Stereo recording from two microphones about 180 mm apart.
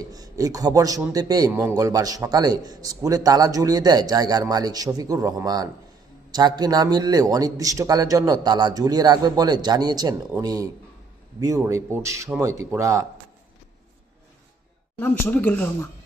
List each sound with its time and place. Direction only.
0.0 s a man's voice: 20° right (ahead or behind)
15.0 s speech: 10° left (ahead or behind)